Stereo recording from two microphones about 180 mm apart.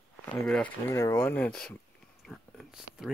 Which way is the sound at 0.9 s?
15° left (ahead or behind).